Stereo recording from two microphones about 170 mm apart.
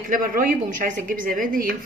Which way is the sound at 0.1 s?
55° right (ahead or behind).